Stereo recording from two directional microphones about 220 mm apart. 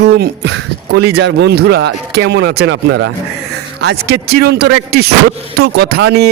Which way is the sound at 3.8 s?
50° right (ahead or behind).